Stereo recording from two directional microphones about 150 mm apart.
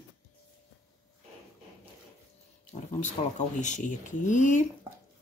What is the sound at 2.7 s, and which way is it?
Speech, 55° left (ahead or behind).